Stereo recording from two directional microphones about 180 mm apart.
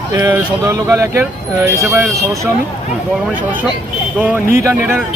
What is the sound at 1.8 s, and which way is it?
Speech, centre (ahead or behind).